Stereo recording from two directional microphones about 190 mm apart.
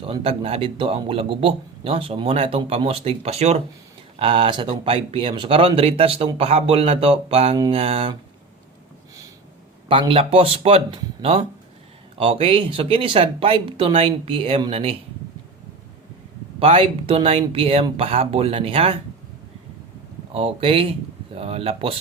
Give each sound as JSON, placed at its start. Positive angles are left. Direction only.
{"t": 0.0, "sound": "speech", "side_deg": -30}
{"t": 9.9, "sound": "speech", "side_deg": -30}
{"t": 16.6, "sound": "speech", "side_deg": -30}
{"t": 20.3, "sound": "speech", "side_deg": -30}